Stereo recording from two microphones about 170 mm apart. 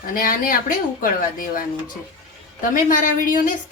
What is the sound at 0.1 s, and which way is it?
A woman's voice, 55° left (ahead or behind).